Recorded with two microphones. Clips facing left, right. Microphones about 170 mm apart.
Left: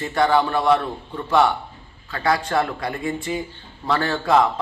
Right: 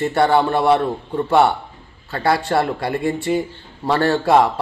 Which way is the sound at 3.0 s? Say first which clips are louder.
Right 6 dB; 70° right (ahead or behind).